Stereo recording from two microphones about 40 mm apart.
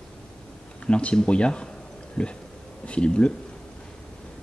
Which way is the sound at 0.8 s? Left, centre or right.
Left.